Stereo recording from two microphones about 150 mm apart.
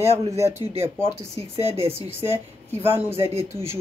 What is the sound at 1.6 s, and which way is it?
Speech, 40° right (ahead or behind).